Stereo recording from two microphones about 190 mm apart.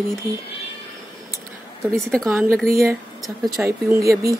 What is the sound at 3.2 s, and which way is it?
Mantra, centre (ahead or behind).